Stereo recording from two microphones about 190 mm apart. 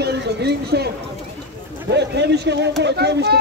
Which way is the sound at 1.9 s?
65° right (ahead or behind).